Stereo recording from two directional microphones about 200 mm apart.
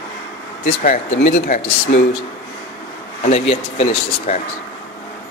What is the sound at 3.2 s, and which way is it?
Speech, 30° left (ahead or behind).